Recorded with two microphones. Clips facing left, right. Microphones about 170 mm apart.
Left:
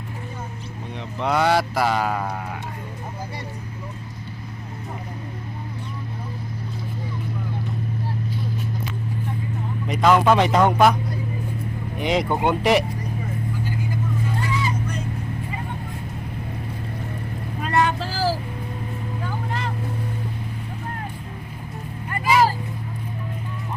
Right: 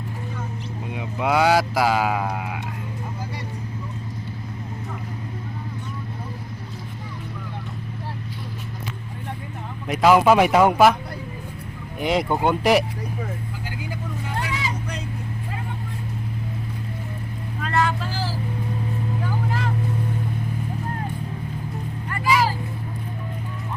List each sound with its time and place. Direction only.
0.9 s speech: 5° right (ahead or behind)
9.8 s a man's voice: 5° right (ahead or behind)
11.9 s speech: centre (ahead or behind)
13.7 s vehicle: 80° right
17.7 s vehicle: 20° left (ahead or behind)
18.0 s vehicle: 40° left (ahead or behind)